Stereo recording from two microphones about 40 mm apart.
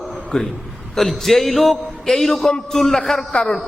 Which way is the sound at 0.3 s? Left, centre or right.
Centre.